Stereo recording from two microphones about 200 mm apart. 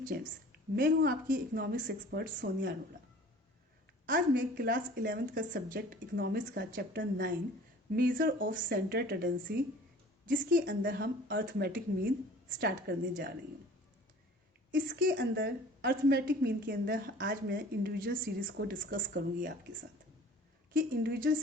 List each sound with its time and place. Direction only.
0.1 s a woman's voice: 50° right (ahead or behind)
4.0 s a woman's voice: 45° right (ahead or behind)
14.8 s a woman's voice: 45° right (ahead or behind)
15.1 s a woman's voice: 60° right (ahead or behind)
18.4 s speech: 65° right (ahead or behind)
18.8 s a woman's voice: 40° right (ahead or behind)
20.7 s a woman's voice: 50° right (ahead or behind)